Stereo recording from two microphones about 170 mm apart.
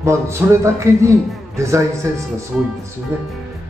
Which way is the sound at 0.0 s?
15° right (ahead or behind).